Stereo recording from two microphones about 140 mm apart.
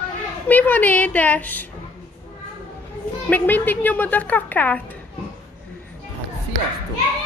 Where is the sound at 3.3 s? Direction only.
15° left (ahead or behind).